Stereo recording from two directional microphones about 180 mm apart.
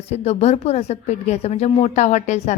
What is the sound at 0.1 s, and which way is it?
A woman's voice, 35° left (ahead or behind).